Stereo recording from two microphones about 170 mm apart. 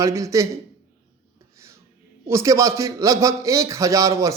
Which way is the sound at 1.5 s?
15° right (ahead or behind).